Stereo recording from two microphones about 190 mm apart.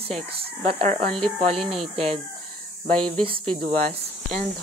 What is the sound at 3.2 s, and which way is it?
Speech, 30° right (ahead or behind).